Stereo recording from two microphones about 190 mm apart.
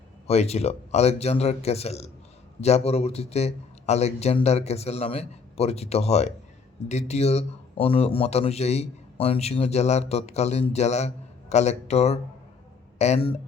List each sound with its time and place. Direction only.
0.3 s a man's voice: 35° left (ahead or behind)